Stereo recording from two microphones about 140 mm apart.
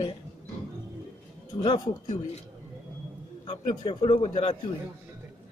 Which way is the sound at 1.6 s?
30° left (ahead or behind).